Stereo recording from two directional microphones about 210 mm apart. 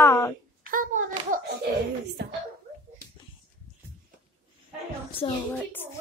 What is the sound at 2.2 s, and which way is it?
Speech, 55° right (ahead or behind).